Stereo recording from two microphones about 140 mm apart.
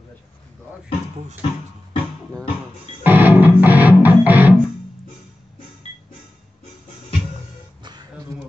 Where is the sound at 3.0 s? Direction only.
15° right (ahead or behind).